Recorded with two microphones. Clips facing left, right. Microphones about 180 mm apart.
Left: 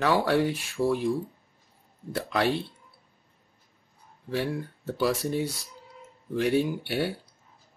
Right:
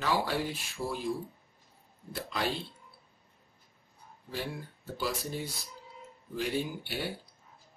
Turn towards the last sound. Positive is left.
turn(degrees=70)  # may be behind; listen again after turning